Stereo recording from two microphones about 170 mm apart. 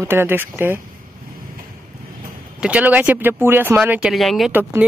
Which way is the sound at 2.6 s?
10° right (ahead or behind).